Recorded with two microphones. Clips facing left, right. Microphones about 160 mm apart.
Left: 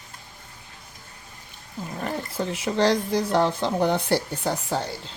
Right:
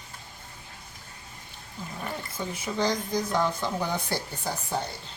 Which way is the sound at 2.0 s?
75° left (ahead or behind).